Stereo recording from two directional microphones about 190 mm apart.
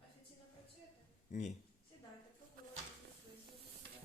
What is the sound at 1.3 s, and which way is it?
Speech, 40° left (ahead or behind).